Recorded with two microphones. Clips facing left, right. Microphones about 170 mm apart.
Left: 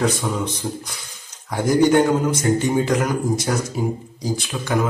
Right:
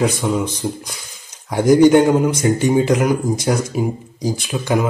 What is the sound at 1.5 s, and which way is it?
A man's voice, 15° right (ahead or behind).